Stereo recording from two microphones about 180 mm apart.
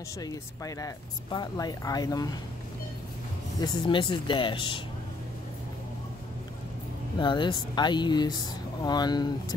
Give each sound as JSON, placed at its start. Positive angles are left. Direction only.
{"t": 0.2, "sound": "speech", "side_deg": 20}
{"t": 3.6, "sound": "speech", "side_deg": 25}
{"t": 7.2, "sound": "speech", "side_deg": 25}